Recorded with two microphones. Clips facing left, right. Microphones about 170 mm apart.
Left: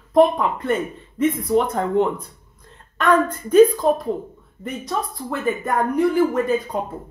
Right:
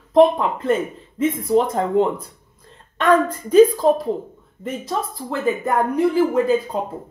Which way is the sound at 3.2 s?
30° right (ahead or behind).